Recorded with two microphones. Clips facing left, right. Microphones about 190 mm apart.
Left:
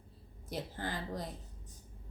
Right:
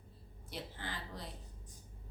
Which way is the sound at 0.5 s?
45° left (ahead or behind).